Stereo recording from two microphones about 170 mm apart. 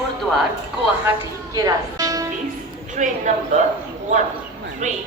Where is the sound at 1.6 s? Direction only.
20° right (ahead or behind).